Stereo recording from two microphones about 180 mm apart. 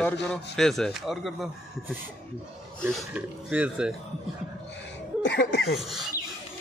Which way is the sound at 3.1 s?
5° right (ahead or behind).